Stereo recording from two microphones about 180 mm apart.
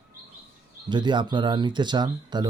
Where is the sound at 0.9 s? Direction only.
25° right (ahead or behind).